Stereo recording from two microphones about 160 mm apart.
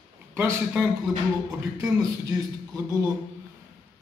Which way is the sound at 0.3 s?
15° right (ahead or behind).